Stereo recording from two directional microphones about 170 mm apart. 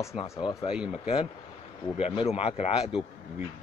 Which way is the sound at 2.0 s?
35° left (ahead or behind).